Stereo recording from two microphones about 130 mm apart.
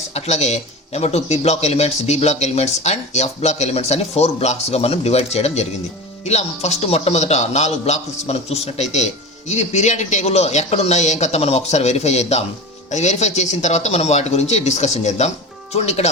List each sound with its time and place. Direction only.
0.1 s a man's voice: 55° left (ahead or behind)